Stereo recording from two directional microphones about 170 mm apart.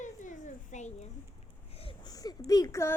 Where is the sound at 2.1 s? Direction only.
20° left (ahead or behind).